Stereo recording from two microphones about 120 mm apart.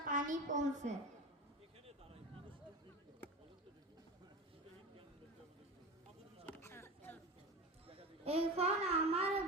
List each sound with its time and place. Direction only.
0.1 s a woman's voice: 90° right
6.4 s a sound: 20° left (ahead or behind)
7.9 s a child's voice: 55° right (ahead or behind)